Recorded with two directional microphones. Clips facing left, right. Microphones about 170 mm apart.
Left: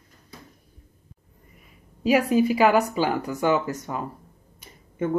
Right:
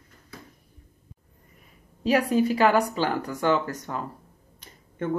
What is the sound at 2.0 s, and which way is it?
Speech, 10° left (ahead or behind).